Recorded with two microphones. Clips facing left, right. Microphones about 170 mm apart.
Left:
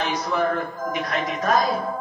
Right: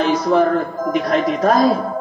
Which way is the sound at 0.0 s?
40° right (ahead or behind).